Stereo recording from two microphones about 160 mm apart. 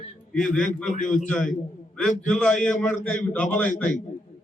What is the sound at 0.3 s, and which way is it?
Speech, 5° left (ahead or behind).